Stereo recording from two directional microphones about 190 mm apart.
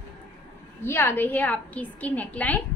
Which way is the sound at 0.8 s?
10° left (ahead or behind).